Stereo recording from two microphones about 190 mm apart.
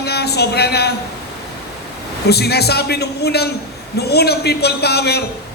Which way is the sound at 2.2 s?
60° left (ahead or behind).